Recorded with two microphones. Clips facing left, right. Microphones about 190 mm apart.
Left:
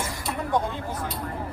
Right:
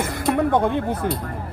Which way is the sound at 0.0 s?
60° right (ahead or behind).